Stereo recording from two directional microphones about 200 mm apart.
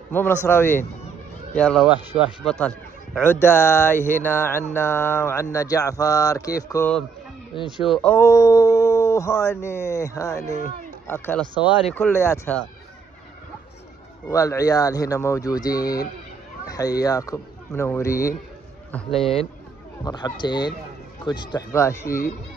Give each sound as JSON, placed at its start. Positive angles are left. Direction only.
{"t": 0.5, "sound": "speech", "side_deg": 10}
{"t": 1.6, "sound": "speech", "side_deg": 0}
{"t": 7.7, "sound": "speech", "side_deg": 0}
{"t": 14.2, "sound": "speech", "side_deg": 15}
{"t": 18.9, "sound": "speech", "side_deg": 5}
{"t": 20.1, "sound": "speech", "side_deg": 20}
{"t": 22.0, "sound": "speech", "side_deg": 45}